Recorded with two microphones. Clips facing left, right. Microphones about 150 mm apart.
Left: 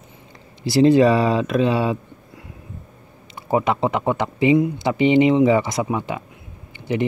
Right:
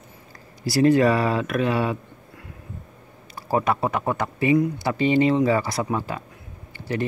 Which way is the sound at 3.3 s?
20° left (ahead or behind).